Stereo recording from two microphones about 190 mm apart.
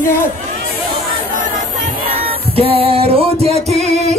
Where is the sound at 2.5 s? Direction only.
30° right (ahead or behind).